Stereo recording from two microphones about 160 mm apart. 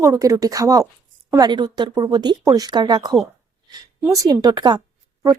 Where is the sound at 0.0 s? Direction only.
20° right (ahead or behind).